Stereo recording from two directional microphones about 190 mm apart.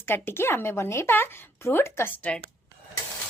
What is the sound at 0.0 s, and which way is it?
Speech, 10° left (ahead or behind).